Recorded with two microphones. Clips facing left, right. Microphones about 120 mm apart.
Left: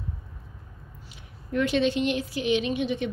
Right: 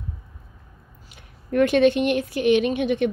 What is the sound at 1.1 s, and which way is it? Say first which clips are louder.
A woman's voice: right 6 dB; 55° right (ahead or behind).